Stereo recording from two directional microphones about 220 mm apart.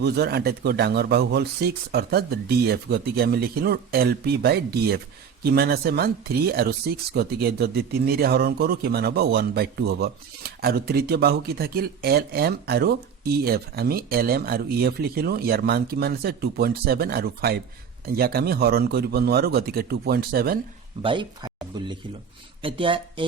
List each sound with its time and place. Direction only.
0.0 s speech: 45° right (ahead or behind)
21.0 s speech: 20° right (ahead or behind)